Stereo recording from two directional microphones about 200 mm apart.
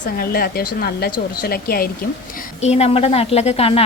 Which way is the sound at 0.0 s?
50° left (ahead or behind).